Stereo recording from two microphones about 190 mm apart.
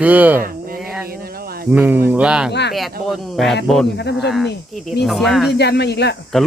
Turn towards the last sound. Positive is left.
turn(degrees=0)  # may be behind; listen again after turning